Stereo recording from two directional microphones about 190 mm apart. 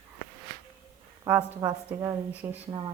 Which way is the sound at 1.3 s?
15° right (ahead or behind).